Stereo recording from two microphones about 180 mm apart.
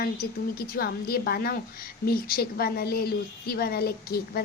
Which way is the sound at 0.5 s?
55° left (ahead or behind).